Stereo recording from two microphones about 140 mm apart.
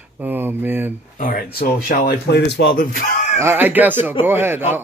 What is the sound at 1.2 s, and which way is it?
Speech, 85° left.